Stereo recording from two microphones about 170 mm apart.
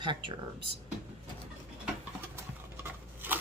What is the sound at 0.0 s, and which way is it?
Speech, 25° right (ahead or behind).